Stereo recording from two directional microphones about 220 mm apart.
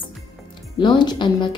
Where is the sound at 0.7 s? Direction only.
20° left (ahead or behind).